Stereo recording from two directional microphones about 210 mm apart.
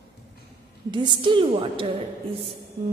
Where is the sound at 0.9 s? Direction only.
20° right (ahead or behind).